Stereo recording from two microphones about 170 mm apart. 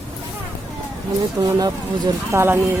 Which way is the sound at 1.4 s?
25° right (ahead or behind).